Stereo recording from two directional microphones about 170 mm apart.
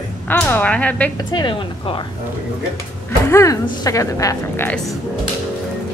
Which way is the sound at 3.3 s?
20° left (ahead or behind).